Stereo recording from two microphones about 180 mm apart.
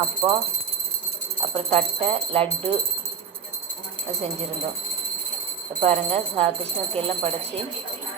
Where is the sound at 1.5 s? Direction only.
35° right (ahead or behind).